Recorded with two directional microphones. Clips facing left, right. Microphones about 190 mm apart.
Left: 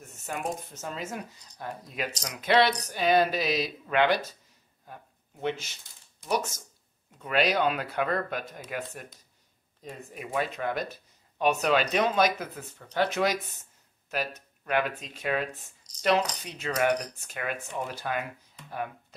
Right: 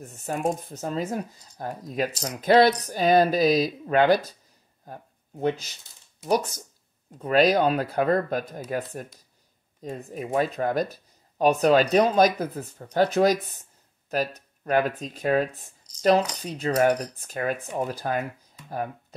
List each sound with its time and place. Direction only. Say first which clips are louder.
0.0 s speech: right 7 dB; 35° right (ahead or behind)